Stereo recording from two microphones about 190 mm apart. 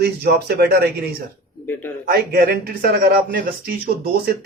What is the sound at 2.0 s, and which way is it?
A man's voice, 50° right (ahead or behind).